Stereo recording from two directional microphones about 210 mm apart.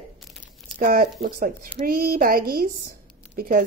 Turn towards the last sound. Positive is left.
turn(degrees=-45)  # may be behind; listen again after turning